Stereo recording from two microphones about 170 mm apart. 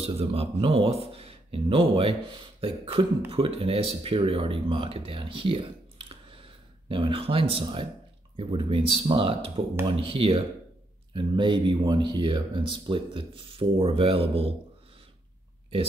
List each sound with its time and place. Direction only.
0.0 s speech: 35° right (ahead or behind)
6.3 s a sound: 30° right (ahead or behind)
8.4 s speech: 30° right (ahead or behind)